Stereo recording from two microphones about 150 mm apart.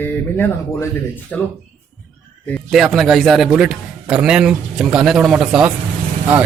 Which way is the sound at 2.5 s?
Centre (ahead or behind).